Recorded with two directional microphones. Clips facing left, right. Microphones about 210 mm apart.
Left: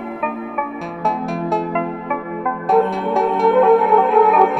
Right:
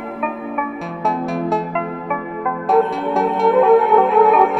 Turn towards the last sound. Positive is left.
turn(degrees=0)  # may be behind; listen again after turning